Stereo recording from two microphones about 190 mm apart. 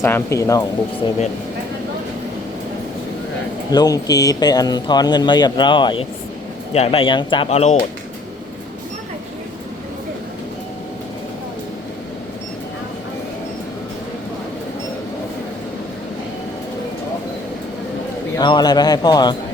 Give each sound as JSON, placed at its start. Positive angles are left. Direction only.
{"t": 0.0, "sound": "speech", "side_deg": 15}
{"t": 3.7, "sound": "speech", "side_deg": 20}
{"t": 18.3, "sound": "speech", "side_deg": 20}